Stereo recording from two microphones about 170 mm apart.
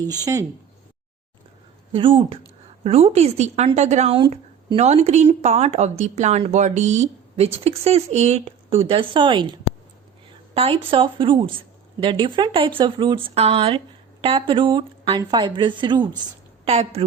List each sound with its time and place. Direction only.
0.3 s speech: 20° right (ahead or behind)
1.9 s speech: 30° right (ahead or behind)
16.6 s speech: 35° right (ahead or behind)